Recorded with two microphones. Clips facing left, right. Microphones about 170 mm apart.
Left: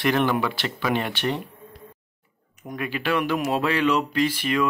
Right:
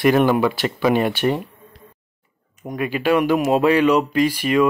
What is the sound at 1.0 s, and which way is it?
Speech, 10° right (ahead or behind).